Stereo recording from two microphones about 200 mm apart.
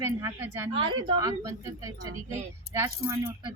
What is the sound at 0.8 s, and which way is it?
Speech, 25° right (ahead or behind).